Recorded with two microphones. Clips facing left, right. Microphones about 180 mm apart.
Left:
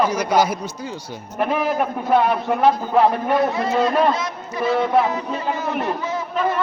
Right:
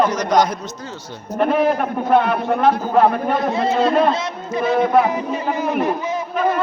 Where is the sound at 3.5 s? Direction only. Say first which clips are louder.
Right 2 dB; 25° right (ahead or behind).